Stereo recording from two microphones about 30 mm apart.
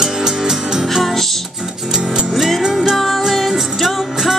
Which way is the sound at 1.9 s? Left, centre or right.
Centre.